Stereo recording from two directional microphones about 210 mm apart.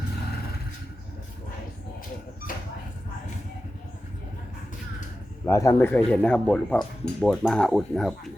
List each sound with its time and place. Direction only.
2.5 s dog: 40° left (ahead or behind)
5.5 s speech: 15° left (ahead or behind)